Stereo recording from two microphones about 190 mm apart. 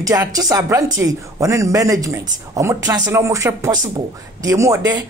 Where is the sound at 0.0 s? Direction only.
20° right (ahead or behind).